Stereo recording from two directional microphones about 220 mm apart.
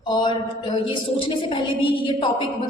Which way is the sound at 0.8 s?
25° left (ahead or behind).